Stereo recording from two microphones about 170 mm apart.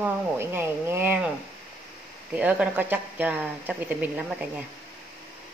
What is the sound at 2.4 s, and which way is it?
A woman's voice, 10° right (ahead or behind).